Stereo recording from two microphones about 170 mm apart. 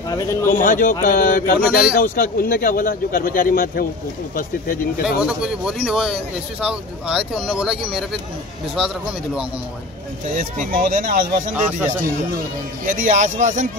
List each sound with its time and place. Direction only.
0.1 s speech: 20° left (ahead or behind)
0.5 s a man's voice: 55° left (ahead or behind)
5.2 s speech: 5° right (ahead or behind)
10.3 s speech: 55° right (ahead or behind)